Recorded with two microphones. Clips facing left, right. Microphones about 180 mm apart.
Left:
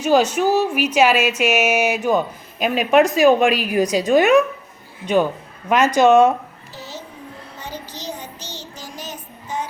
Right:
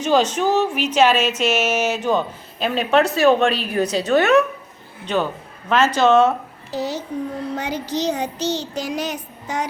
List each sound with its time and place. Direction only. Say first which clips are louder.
0.0 s speech: left 2 dB; 10° left (ahead or behind)
6.7 s a child's voice: right 11 dB; 75° right (ahead or behind)
7.5 s child singing: right 7 dB; 80° right